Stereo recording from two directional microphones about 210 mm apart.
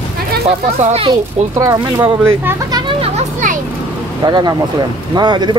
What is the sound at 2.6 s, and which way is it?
Children playing, 20° right (ahead or behind).